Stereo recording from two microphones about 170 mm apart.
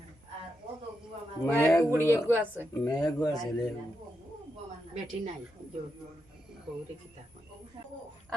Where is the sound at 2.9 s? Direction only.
20° left (ahead or behind).